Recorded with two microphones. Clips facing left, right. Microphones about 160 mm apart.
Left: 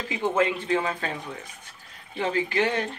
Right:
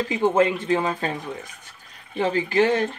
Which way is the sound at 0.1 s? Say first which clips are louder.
Right 4 dB; 40° right (ahead or behind).